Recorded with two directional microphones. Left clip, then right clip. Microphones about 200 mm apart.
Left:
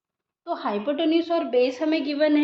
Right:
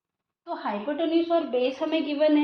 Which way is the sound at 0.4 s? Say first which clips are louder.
Left 4 dB; 55° left (ahead or behind).